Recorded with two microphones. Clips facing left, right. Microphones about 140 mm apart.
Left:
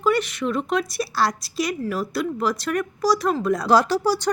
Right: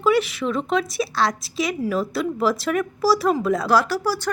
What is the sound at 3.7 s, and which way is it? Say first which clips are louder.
Speech: left 5 dB; 20° left (ahead or behind).